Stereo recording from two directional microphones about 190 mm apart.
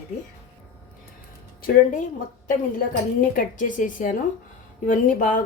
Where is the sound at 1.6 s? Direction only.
50° left (ahead or behind).